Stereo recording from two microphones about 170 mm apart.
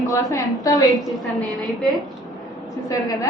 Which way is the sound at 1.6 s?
Centre (ahead or behind).